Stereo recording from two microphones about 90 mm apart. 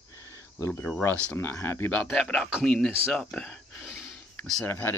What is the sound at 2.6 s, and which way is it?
Speech, 5° left (ahead or behind).